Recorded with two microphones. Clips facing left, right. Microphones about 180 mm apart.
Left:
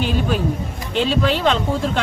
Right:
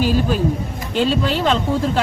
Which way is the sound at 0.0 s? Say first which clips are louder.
Right 3 dB; centre (ahead or behind).